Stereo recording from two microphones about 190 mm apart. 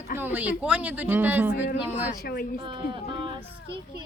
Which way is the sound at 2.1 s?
55° left (ahead or behind).